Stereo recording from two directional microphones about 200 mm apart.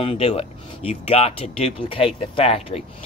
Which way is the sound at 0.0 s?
30° left (ahead or behind).